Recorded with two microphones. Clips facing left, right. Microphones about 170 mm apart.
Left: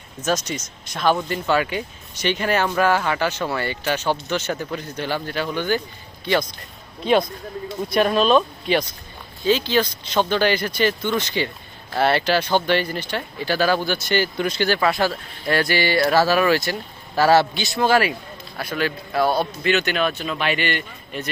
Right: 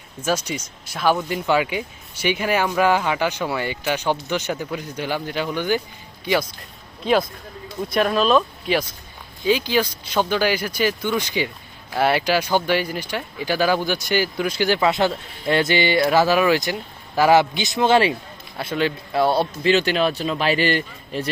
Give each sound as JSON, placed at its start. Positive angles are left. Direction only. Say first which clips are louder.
{"t": 0.2, "sound": "speech", "louder": "even", "side_deg": -10}
{"t": 7.0, "sound": "speech", "louder": "left 1 dB", "side_deg": 0}